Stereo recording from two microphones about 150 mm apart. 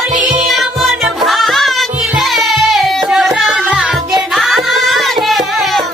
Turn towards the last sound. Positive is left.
turn(degrees=0)  # may be behind; listen again after turning